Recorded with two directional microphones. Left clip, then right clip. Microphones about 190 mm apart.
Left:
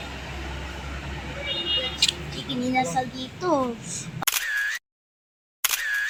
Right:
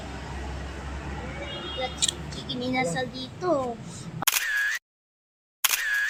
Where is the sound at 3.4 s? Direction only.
50° left (ahead or behind).